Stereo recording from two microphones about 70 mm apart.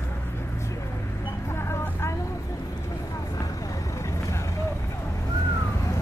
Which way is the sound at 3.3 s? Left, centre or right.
Left.